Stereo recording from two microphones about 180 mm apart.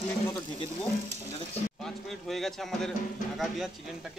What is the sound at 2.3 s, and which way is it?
Sizzle, centre (ahead or behind).